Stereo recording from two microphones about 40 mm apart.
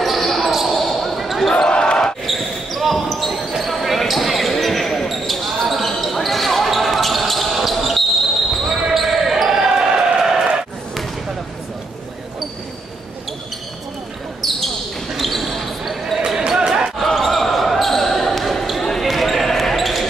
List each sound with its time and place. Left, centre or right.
0.0 s basketball bounce: centre
1.5 s basketball bounce: left
2.2 s basketball bounce: centre
15.1 s basketball bounce: centre
16.3 s basketball bounce: centre
17.0 s basketball bounce: centre